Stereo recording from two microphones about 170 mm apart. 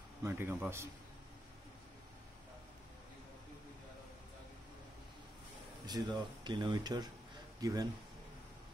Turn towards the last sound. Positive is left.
turn(degrees=-20)  # may be behind; listen again after turning